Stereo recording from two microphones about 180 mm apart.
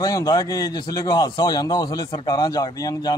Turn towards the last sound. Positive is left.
turn(degrees=20)  # may be behind; listen again after turning